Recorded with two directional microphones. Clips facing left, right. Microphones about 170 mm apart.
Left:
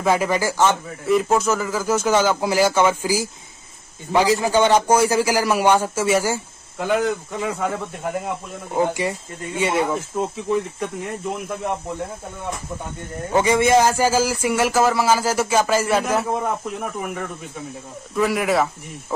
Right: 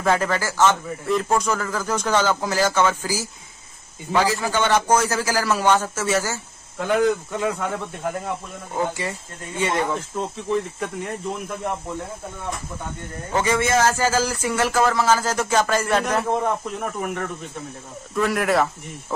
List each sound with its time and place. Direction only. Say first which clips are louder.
0.0 s speech: left 2 dB; 10° left (ahead or behind)
8.7 s speech: left 5 dB; 15° left (ahead or behind)
13.3 s speech: left 4 dB; 15° left (ahead or behind)